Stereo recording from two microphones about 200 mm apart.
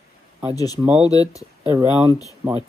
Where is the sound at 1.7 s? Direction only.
10° right (ahead or behind).